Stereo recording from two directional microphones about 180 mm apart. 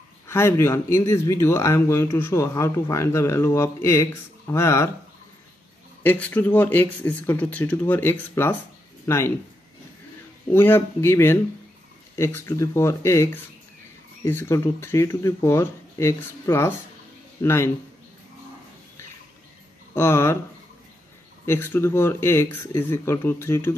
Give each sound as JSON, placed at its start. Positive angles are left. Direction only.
{"t": 0.3, "sound": "speech", "side_deg": 15}
{"t": 6.0, "sound": "speech", "side_deg": 10}
{"t": 10.5, "sound": "a man's voice", "side_deg": 10}
{"t": 19.9, "sound": "speech", "side_deg": 15}
{"t": 21.5, "sound": "speech", "side_deg": 15}